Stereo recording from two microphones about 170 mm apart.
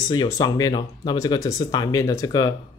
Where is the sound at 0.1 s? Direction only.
20° left (ahead or behind).